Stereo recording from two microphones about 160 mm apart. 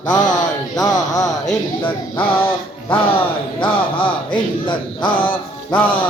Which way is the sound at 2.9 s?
35° left (ahead or behind).